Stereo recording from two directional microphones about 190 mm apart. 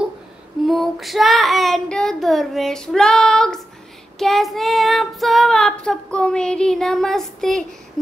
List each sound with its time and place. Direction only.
0.7 s child singing: centre (ahead or behind)